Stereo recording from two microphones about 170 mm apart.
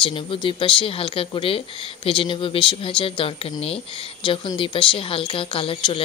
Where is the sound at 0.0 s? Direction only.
30° left (ahead or behind).